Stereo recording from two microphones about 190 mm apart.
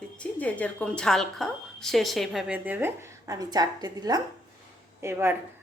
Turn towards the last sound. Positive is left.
turn(degrees=-15)  # may be behind; listen again after turning